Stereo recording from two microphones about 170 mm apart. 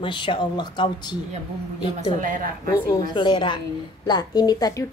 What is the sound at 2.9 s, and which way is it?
A woman's voice, 25° left (ahead or behind).